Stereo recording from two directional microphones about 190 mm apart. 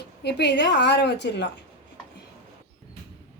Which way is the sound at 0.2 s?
60° left (ahead or behind).